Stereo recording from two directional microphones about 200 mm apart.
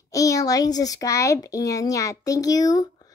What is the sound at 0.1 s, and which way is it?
A child's voice, 15° left (ahead or behind).